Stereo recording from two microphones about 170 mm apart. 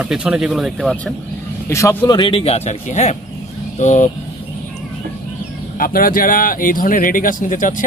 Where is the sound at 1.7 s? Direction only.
15° left (ahead or behind).